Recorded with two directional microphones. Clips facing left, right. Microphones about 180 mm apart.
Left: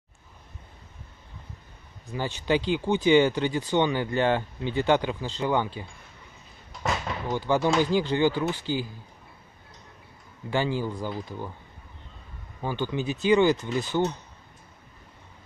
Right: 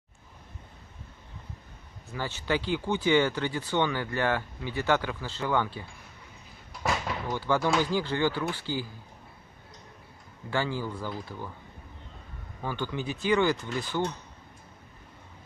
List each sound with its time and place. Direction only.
2.1 s speech: 20° left (ahead or behind)
6.8 s a sound: centre (ahead or behind)
7.2 s speech: 20° left (ahead or behind)
10.5 s speech: 20° left (ahead or behind)
12.6 s speech: 20° left (ahead or behind)